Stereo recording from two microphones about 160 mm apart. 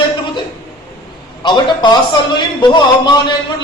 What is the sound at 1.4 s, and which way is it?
A man's voice, 30° left (ahead or behind).